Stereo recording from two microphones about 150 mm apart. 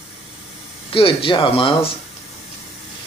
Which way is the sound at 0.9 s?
35° left (ahead or behind).